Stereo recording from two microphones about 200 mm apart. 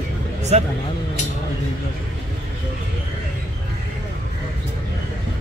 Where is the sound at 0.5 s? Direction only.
30° right (ahead or behind).